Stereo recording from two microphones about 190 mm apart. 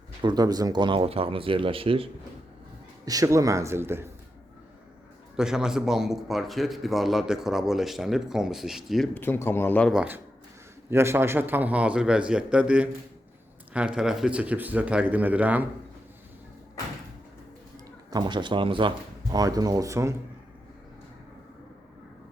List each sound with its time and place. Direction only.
0.2 s speech: 20° right (ahead or behind)
3.1 s a man's voice: 15° right (ahead or behind)
5.4 s a man's voice: 5° right (ahead or behind)
9.2 s speech: 10° left (ahead or behind)
9.9 s a man's voice: 5° right (ahead or behind)
18.1 s speech: 20° right (ahead or behind)